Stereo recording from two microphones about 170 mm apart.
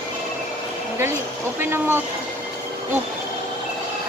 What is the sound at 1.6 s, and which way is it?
Speech, 15° right (ahead or behind).